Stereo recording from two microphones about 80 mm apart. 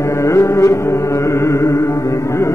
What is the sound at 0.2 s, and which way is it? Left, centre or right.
Music, left.